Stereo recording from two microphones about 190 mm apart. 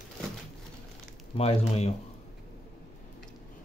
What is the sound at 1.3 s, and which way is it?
Speech, 30° left (ahead or behind).